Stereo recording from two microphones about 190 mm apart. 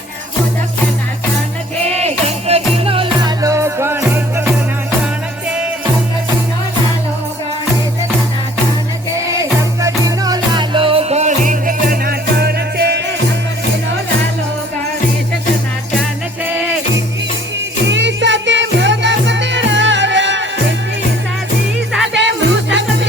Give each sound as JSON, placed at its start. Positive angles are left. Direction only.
{"t": 2.0, "sound": "music", "side_deg": -35}
{"t": 9.3, "sound": "music", "side_deg": -15}
{"t": 17.8, "sound": "music", "side_deg": -70}
{"t": 21.9, "sound": "music", "side_deg": 0}
{"t": 22.2, "sound": "music", "side_deg": -70}